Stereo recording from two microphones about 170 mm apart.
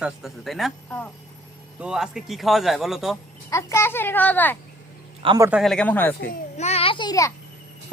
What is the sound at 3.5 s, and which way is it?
A woman's voice, 15° left (ahead or behind).